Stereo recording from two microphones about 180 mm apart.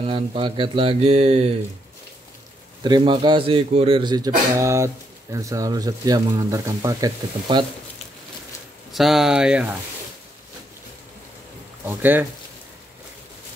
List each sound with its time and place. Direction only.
0.0 s speech: 30° right (ahead or behind)
2.8 s speech: 25° right (ahead or behind)
8.9 s speech: centre (ahead or behind)
11.8 s speech: 10° right (ahead or behind)